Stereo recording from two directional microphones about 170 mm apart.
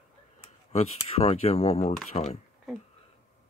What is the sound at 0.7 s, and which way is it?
Speech, 40° left (ahead or behind).